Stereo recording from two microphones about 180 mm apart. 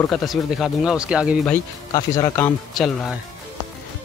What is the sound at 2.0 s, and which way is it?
Speech, 15° left (ahead or behind).